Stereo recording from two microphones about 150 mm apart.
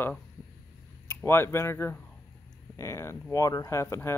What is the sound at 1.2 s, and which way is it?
Speech, 15° left (ahead or behind).